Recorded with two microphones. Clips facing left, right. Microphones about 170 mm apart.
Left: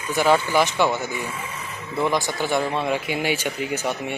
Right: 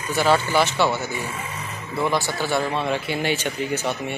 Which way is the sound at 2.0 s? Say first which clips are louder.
Even; 15° left (ahead or behind).